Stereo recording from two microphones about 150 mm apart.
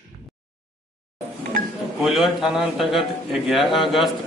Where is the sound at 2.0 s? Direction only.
Centre (ahead or behind).